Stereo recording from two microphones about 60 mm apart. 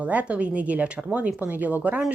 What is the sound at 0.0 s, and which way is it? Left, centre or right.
A woman's voice, right.